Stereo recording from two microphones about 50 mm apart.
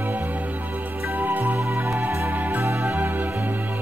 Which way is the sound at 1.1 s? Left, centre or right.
Right.